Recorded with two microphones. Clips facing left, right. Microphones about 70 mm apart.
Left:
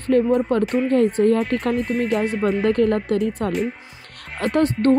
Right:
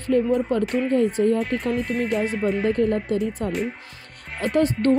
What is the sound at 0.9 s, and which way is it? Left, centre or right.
Speech, left.